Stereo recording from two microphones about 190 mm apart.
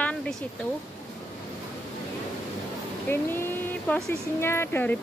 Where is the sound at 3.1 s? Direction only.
10° left (ahead or behind).